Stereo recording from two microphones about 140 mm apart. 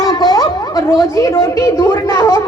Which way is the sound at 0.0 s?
30° left (ahead or behind).